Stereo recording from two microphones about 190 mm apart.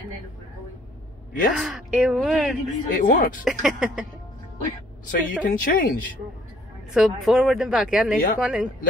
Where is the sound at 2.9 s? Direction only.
45° left (ahead or behind).